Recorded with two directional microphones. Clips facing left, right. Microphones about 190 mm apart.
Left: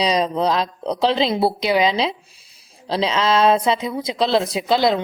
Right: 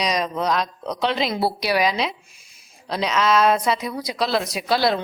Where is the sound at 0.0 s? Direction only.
30° left (ahead or behind).